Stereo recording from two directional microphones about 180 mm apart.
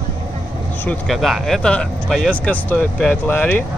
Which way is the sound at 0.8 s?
5° left (ahead or behind).